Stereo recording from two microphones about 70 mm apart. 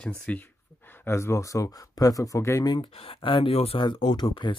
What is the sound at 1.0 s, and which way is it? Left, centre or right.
Speech, left.